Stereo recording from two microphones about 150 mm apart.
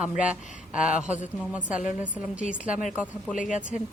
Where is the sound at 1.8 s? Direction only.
55° left (ahead or behind).